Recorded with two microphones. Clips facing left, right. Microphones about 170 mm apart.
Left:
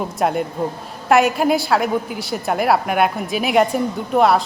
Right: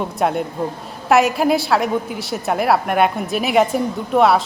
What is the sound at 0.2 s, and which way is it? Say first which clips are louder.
A woman's voice: left 1 dB; centre (ahead or behind).